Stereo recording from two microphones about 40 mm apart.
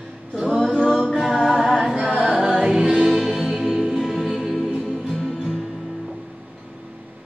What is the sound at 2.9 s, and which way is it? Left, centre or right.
Music, centre.